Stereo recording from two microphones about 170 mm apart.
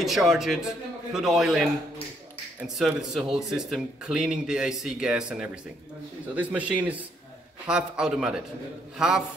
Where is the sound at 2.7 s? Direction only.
Centre (ahead or behind).